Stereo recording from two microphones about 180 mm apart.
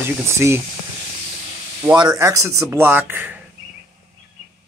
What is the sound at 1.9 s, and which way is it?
Speech, 20° right (ahead or behind).